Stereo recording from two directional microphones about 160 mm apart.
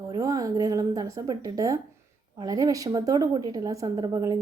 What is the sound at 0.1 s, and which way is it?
A woman's voice, 20° right (ahead or behind).